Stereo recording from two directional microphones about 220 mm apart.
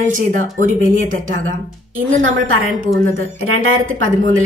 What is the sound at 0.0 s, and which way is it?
Speech, 35° right (ahead or behind).